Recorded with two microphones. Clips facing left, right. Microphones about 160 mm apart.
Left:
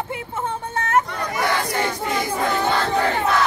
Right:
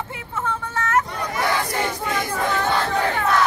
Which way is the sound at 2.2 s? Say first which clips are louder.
Left 1 dB; 10° left (ahead or behind).